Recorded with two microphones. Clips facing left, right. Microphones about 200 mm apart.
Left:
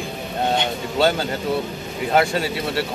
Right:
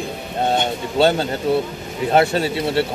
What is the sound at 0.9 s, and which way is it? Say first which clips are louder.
Speech: right 3 dB; 25° right (ahead or behind).